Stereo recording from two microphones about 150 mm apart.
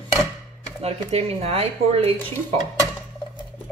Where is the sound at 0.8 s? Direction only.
45° right (ahead or behind).